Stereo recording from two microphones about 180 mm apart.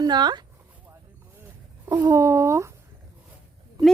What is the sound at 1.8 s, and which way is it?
Speech, 15° right (ahead or behind).